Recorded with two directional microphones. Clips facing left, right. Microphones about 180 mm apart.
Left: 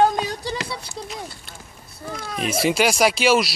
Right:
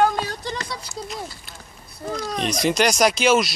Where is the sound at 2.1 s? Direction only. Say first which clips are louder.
Right 5 dB; 40° right (ahead or behind).